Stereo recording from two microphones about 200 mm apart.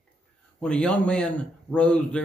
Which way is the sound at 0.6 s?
5° left (ahead or behind).